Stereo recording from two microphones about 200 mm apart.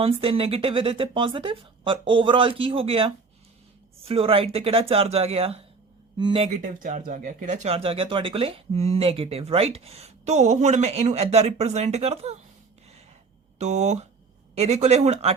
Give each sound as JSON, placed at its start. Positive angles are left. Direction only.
{"t": 0.0, "sound": "speech", "side_deg": -30}
{"t": 6.6, "sound": "speech", "side_deg": -40}
{"t": 13.6, "sound": "speech", "side_deg": -35}